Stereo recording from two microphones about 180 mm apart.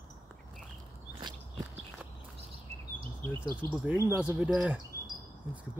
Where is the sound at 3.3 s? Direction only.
25° right (ahead or behind).